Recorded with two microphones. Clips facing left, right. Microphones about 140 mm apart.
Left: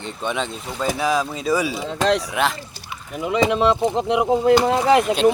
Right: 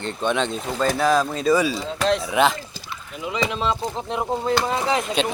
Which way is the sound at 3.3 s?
60° left (ahead or behind).